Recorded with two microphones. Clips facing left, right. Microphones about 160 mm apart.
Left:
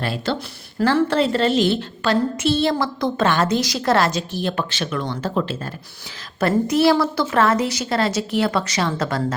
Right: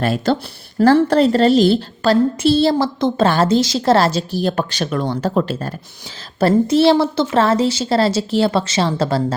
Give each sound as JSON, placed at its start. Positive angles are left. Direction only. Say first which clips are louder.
{"t": 0.0, "sound": "a woman's voice", "louder": "right 6 dB", "side_deg": -45}
{"t": 6.4, "sound": "a woman's voice", "louder": "right 4 dB", "side_deg": -30}